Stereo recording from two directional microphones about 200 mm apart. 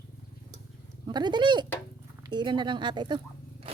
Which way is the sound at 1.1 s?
20° right (ahead or behind).